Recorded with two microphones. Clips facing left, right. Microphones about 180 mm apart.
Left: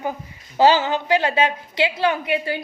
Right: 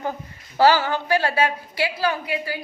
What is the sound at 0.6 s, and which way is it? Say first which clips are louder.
A woman's voice: left 1 dB; 20° left (ahead or behind).